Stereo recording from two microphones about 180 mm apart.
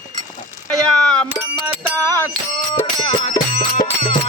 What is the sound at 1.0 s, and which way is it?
Music, 5° left (ahead or behind).